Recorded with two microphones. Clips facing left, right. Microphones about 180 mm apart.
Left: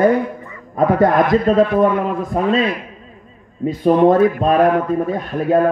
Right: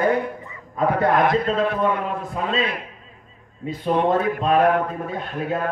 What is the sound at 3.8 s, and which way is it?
A man's voice, 45° left (ahead or behind).